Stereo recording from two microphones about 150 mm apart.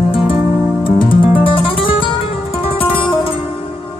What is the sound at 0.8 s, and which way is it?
Music, 35° left (ahead or behind).